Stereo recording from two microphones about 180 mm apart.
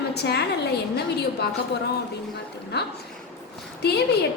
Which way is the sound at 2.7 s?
65° left (ahead or behind).